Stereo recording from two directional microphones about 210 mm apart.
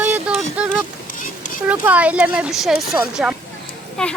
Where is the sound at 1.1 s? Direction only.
40° left (ahead or behind).